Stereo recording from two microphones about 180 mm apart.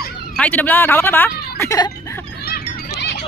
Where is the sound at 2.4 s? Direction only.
65° left (ahead or behind).